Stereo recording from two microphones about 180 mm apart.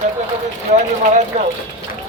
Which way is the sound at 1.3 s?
40° right (ahead or behind).